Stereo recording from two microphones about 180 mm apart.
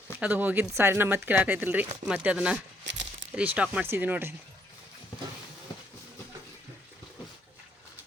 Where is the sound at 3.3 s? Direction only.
10° right (ahead or behind).